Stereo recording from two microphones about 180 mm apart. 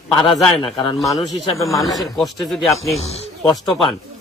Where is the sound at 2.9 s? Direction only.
35° left (ahead or behind).